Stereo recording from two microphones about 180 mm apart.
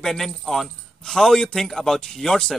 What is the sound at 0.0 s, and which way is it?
A man's voice, centre (ahead or behind).